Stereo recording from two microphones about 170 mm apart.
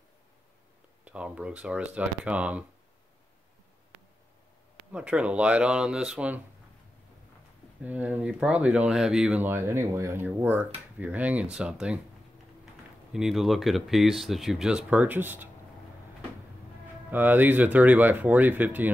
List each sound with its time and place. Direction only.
1.0 s speech: 5° right (ahead or behind)
4.9 s speech: 5° right (ahead or behind)
7.8 s speech: 10° right (ahead or behind)
13.1 s speech: centre (ahead or behind)
17.1 s speech: 10° right (ahead or behind)